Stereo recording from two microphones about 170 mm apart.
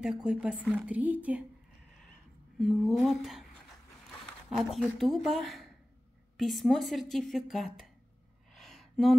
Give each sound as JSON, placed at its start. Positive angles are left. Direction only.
{"t": 0.0, "sound": "a woman's voice", "side_deg": -5}
{"t": 2.6, "sound": "speech", "side_deg": 0}
{"t": 4.5, "sound": "speech", "side_deg": 0}
{"t": 8.5, "sound": "a sound", "side_deg": 0}